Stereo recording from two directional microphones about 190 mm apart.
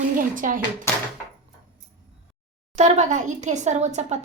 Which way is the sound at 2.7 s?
40° right (ahead or behind).